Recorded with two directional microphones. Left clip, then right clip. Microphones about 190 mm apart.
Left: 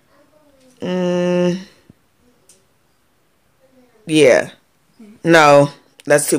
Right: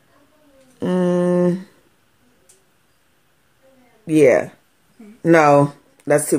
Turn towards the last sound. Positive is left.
turn(degrees=10)  # may be behind; listen again after turning